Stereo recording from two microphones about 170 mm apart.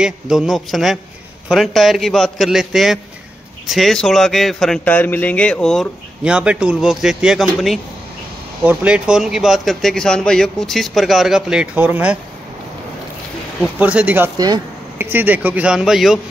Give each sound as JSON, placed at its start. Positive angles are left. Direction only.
{"t": 0.0, "sound": "a man's voice", "side_deg": -5}
{"t": 13.6, "sound": "a man's voice", "side_deg": -5}
{"t": 14.3, "sound": "speech", "side_deg": -25}
{"t": 15.0, "sound": "a man's voice", "side_deg": -10}